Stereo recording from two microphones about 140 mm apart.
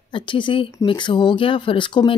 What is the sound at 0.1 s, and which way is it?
Speech, 35° left (ahead or behind).